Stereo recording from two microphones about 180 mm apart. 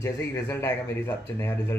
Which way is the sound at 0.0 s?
15° left (ahead or behind).